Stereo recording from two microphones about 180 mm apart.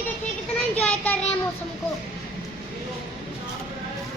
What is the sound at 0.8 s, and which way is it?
Speech, 5° left (ahead or behind).